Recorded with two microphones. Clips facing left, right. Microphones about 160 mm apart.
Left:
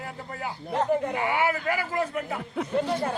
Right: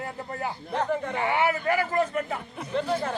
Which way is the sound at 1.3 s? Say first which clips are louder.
Right 4 dB; 25° right (ahead or behind).